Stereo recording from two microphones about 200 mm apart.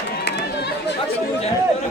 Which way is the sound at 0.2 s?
55° left (ahead or behind).